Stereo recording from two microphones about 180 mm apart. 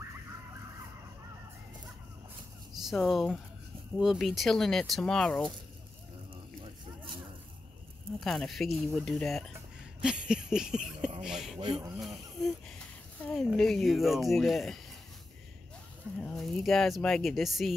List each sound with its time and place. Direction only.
2.7 s speech: centre (ahead or behind)
6.6 s a sound: 25° right (ahead or behind)
8.2 s speech: centre (ahead or behind)
11.6 s speech: 25° right (ahead or behind)
12.0 s speech: centre (ahead or behind)
16.2 s speech: centre (ahead or behind)